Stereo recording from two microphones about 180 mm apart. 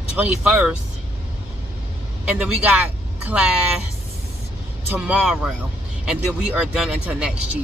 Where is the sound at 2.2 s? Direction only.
5° right (ahead or behind).